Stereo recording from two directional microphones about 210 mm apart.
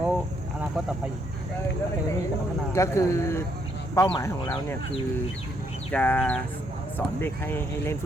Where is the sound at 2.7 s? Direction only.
15° left (ahead or behind).